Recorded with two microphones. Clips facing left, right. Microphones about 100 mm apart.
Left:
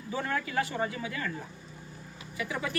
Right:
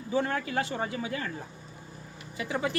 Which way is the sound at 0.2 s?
35° right (ahead or behind).